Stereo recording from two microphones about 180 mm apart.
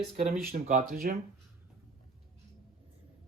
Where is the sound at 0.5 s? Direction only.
45° right (ahead or behind).